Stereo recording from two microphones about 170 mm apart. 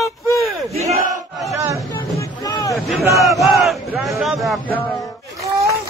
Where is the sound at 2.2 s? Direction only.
20° left (ahead or behind).